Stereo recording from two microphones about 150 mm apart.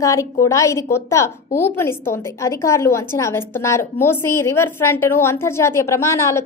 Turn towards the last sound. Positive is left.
turn(degrees=20)  # may be behind; listen again after turning